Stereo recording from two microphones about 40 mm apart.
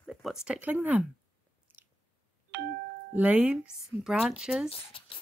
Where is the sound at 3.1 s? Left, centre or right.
Right.